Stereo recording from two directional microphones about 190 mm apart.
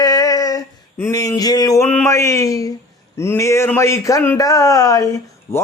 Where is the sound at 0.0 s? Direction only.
20° left (ahead or behind).